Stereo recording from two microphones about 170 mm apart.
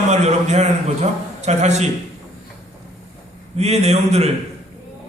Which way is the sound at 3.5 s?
40° right (ahead or behind).